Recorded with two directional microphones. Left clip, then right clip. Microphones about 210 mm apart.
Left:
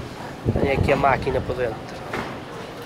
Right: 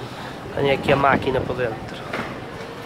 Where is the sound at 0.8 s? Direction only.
10° right (ahead or behind).